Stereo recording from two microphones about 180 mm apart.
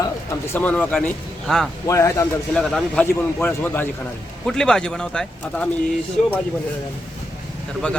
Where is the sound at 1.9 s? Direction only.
15° left (ahead or behind).